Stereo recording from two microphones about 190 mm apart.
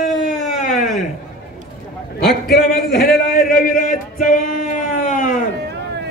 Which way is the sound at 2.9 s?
55° left (ahead or behind).